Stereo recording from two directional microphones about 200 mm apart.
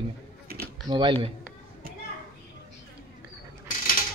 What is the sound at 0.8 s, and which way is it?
Speech, 25° right (ahead or behind).